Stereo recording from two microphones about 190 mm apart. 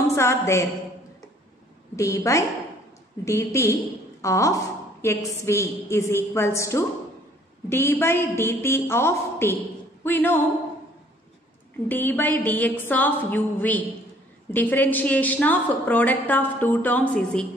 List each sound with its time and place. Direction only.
0.0 s a woman's voice: 15° left (ahead or behind)
2.0 s a woman's voice: 15° left (ahead or behind)
11.9 s a woman's voice: 10° left (ahead or behind)